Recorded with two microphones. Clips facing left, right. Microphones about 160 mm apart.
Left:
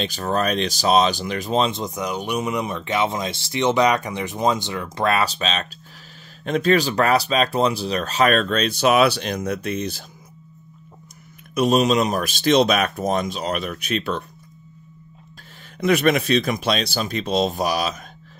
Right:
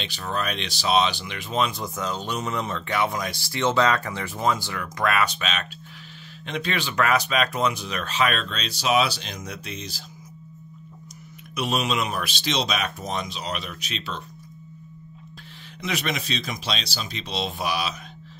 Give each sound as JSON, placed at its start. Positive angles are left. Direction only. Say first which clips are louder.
{"t": 0.0, "sound": "speech", "louder": "left 7 dB", "side_deg": 45}
{"t": 6.4, "sound": "speech", "louder": "left 10 dB", "side_deg": 45}
{"t": 11.5, "sound": "speech", "louder": "left 8 dB", "side_deg": 40}
{"t": 15.8, "sound": "speech", "louder": "left 11 dB", "side_deg": 55}